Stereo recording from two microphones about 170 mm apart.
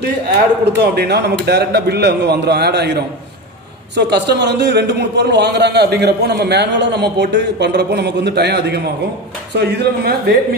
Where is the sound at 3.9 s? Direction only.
90° right.